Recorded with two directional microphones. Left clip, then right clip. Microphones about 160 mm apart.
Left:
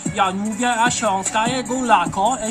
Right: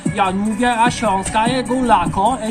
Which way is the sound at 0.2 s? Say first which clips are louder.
Right 2 dB; 10° left (ahead or behind).